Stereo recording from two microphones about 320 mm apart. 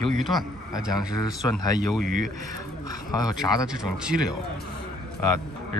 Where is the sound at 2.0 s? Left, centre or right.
Right.